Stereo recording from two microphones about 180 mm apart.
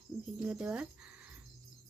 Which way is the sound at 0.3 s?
5° right (ahead or behind).